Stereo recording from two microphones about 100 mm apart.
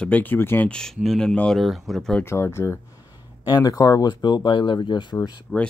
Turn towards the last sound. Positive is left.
turn(degrees=45)  # may be behind; listen again after turning